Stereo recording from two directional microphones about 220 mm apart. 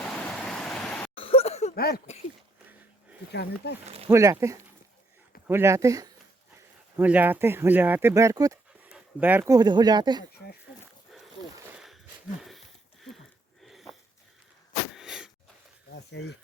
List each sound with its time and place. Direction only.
0.0 s stream: 5° left (ahead or behind)
1.1 s a sound: 25° left (ahead or behind)
1.7 s speech: 45° left (ahead or behind)
3.3 s speech: 50° left (ahead or behind)
3.8 s speech: 25° right (ahead or behind)
4.1 s speech: 15° right (ahead or behind)
8.9 s dog: 5° right (ahead or behind)
9.6 s speech: 20° right (ahead or behind)
12.4 s a sound: centre (ahead or behind)
13.7 s wheeze: centre (ahead or behind)
14.9 s a sound: centre (ahead or behind)
16.1 s speech: 50° left (ahead or behind)